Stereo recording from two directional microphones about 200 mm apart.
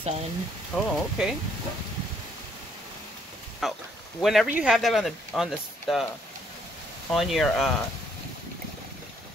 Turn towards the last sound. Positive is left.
turn(degrees=0)  # may be behind; listen again after turning